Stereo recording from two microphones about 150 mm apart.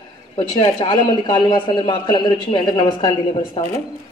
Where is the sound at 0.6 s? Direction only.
35° left (ahead or behind).